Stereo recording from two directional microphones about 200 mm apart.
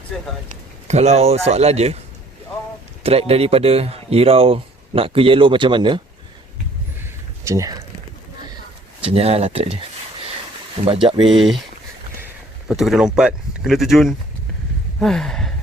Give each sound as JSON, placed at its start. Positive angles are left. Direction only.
{"t": 0.4, "sound": "speech", "side_deg": -35}
{"t": 3.0, "sound": "speech", "side_deg": -30}
{"t": 7.4, "sound": "speech", "side_deg": -15}
{"t": 9.1, "sound": "speech", "side_deg": -30}
{"t": 12.6, "sound": "speech", "side_deg": 0}
{"t": 14.9, "sound": "a sound", "side_deg": 0}